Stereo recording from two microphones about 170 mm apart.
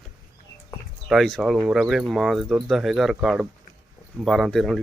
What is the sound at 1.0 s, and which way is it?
Speech, centre (ahead or behind).